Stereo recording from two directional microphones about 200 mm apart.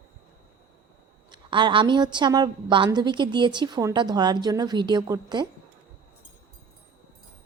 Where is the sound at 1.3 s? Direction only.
25° right (ahead or behind).